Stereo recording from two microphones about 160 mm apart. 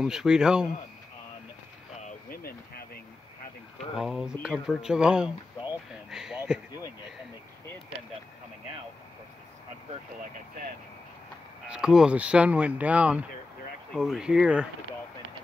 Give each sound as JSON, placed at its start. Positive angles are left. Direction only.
{"t": 0.0, "sound": "speech", "side_deg": -5}
{"t": 2.0, "sound": "vehicle", "side_deg": 55}
{"t": 3.9, "sound": "speech", "side_deg": 0}
{"t": 6.0, "sound": "a sound", "side_deg": -5}
{"t": 11.7, "sound": "speech", "side_deg": -5}